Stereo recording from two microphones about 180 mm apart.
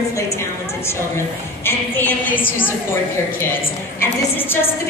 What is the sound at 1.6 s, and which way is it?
A woman's voice, 10° left (ahead or behind).